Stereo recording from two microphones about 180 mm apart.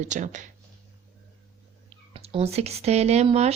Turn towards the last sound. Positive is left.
turn(degrees=-35)  # may be behind; listen again after turning